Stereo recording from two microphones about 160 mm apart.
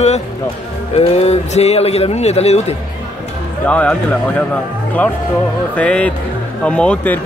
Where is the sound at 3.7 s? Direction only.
10° left (ahead or behind).